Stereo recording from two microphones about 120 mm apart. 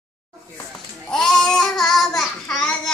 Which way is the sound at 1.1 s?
5° left (ahead or behind).